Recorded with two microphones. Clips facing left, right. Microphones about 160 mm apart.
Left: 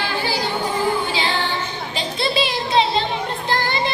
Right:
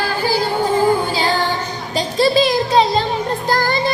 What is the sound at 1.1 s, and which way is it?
Child singing, 40° right (ahead or behind).